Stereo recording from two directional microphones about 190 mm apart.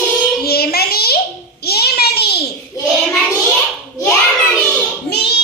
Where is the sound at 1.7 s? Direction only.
55° left (ahead or behind).